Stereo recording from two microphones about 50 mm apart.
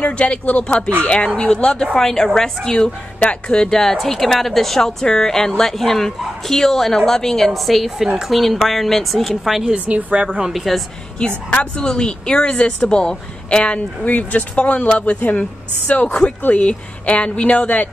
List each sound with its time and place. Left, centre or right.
0.0 s a woman's voice: left
3.2 s speech: left
3.5 s a woman's voice: centre
9.8 s speech: right
10.2 s a woman's voice: centre
10.5 s a woman's voice: centre
11.1 s speech: left